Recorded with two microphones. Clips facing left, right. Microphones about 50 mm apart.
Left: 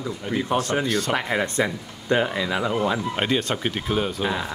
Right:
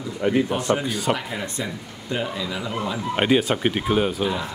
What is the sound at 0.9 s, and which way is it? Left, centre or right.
Speech, centre.